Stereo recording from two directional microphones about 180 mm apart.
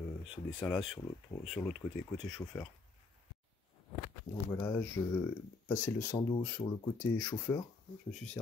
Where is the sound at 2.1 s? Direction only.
5° left (ahead or behind).